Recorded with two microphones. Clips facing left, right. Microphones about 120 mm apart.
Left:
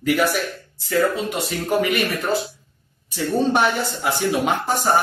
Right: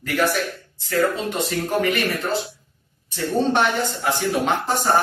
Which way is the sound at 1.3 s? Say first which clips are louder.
Left 1 dB; 5° left (ahead or behind).